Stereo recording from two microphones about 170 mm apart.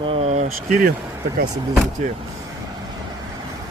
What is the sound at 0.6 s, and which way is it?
Speech, 50° right (ahead or behind).